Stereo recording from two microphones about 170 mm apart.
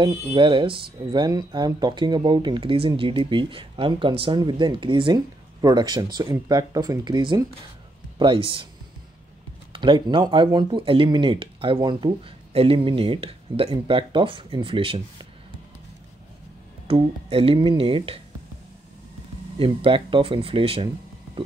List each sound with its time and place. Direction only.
0.0 s speech: 30° right (ahead or behind)
9.7 s speech: 30° right (ahead or behind)
16.8 s speech: 35° right (ahead or behind)
19.6 s speech: 30° right (ahead or behind)